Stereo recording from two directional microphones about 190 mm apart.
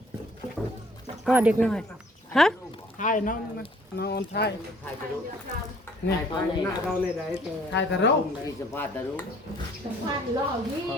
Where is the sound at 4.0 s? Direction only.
60° left (ahead or behind).